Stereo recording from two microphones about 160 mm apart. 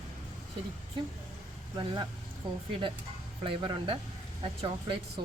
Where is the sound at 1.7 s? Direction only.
25° right (ahead or behind).